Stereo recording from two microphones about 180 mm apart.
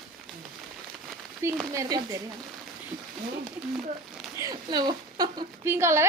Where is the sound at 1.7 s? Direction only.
20° right (ahead or behind).